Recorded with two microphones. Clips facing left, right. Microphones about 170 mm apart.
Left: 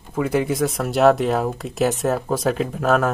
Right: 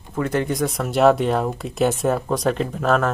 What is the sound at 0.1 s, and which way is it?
Speech, 10° left (ahead or behind).